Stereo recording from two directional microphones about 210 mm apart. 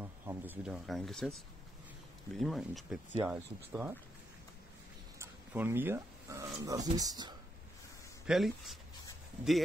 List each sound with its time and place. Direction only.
0.0 s speech: 10° right (ahead or behind)
5.5 s speech: 10° right (ahead or behind)
8.3 s speech: centre (ahead or behind)